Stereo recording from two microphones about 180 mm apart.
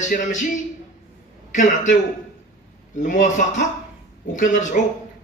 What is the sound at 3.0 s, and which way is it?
Speech, 45° left (ahead or behind).